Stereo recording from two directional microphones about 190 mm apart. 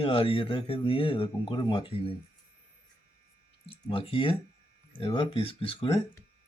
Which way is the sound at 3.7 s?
30° left (ahead or behind).